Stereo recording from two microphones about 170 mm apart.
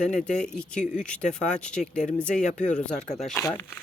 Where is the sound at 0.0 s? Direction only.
5° left (ahead or behind).